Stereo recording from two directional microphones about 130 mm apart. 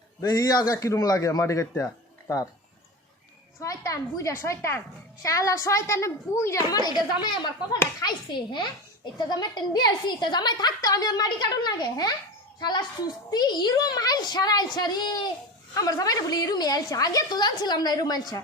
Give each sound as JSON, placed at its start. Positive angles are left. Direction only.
{"t": 0.2, "sound": "a woman's voice", "side_deg": 25}
{"t": 3.6, "sound": "a woman's voice", "side_deg": 25}